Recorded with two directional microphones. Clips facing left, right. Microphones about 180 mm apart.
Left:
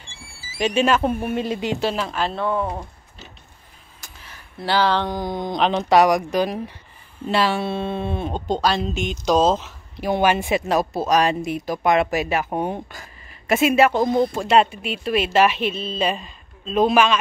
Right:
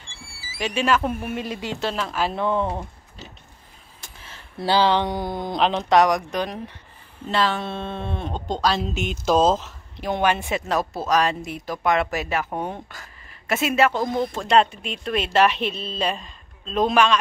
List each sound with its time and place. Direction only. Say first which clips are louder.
0.6 s speech: left 3 dB; 20° left (ahead or behind); by 2.1 s 5° left (ahead or behind)
2.1 s speech: even; 10° right (ahead or behind)
2.5 s speech: even; 10° left (ahead or behind)
4.0 s speech: even; 25° right (ahead or behind); by 17.2 s 5° left (ahead or behind)